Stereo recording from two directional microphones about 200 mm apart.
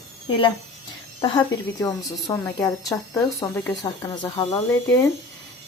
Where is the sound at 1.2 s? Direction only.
20° left (ahead or behind).